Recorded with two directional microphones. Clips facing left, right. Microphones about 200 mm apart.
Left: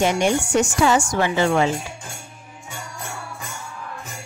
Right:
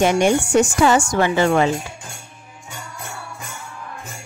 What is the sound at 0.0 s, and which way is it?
Speech, 50° right (ahead or behind).